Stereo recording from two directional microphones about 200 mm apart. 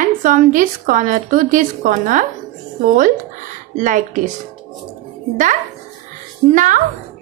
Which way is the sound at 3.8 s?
40° right (ahead or behind).